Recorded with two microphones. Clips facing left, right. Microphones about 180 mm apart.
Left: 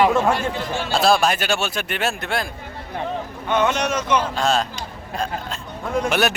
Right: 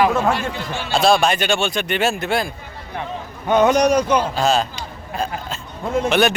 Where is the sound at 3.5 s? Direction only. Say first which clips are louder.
Right 6 dB; 40° right (ahead or behind).